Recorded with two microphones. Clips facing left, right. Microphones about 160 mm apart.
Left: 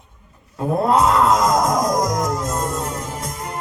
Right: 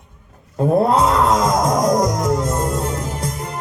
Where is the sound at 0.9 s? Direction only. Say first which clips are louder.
Even; 30° right (ahead or behind).